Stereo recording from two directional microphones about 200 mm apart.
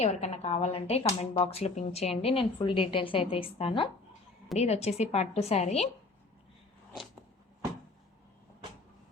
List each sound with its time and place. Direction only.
0.0 s a woman's voice: 30° left (ahead or behind)